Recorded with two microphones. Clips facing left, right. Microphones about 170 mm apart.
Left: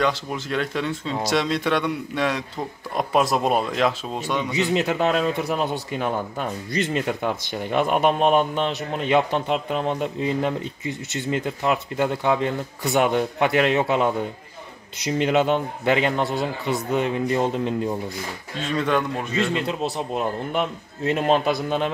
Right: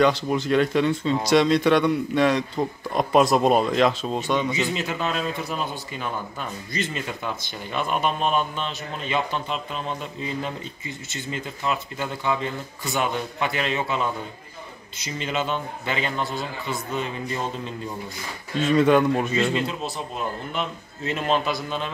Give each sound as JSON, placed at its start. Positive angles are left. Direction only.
{"t": 0.0, "sound": "speech", "side_deg": 0}
{"t": 4.6, "sound": "a man's voice", "side_deg": 65}
{"t": 18.6, "sound": "speech", "side_deg": -5}
{"t": 20.5, "sound": "a man's voice", "side_deg": 55}